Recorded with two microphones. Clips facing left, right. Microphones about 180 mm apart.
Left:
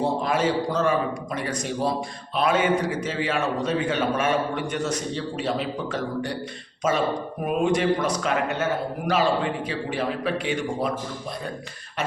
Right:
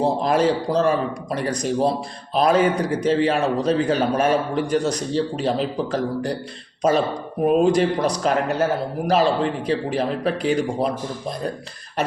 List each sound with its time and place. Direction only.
0.0 s a man's voice: 35° right (ahead or behind)